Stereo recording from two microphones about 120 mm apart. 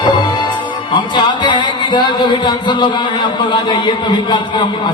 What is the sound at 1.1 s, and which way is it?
A man's voice, 40° left (ahead or behind).